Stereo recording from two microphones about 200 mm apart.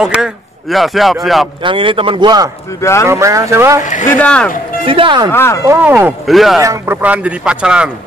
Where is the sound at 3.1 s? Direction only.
15° right (ahead or behind).